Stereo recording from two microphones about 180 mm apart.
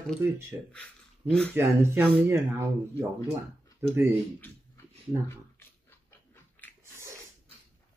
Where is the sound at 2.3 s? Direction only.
15° right (ahead or behind).